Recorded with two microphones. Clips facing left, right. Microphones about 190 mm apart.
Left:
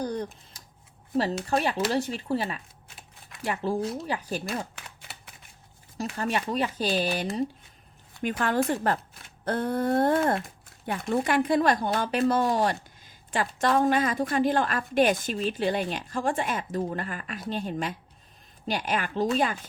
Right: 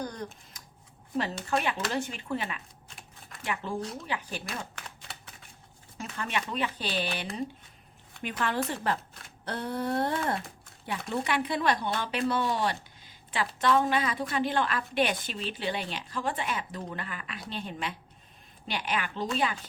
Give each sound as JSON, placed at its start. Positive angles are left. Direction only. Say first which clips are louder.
{"t": 0.0, "sound": "a sound", "louder": "left 6 dB", "side_deg": 30}
{"t": 1.5, "sound": "speech", "louder": "left 4 dB", "side_deg": 35}
{"t": 6.0, "sound": "a woman's voice", "louder": "left 5 dB", "side_deg": 40}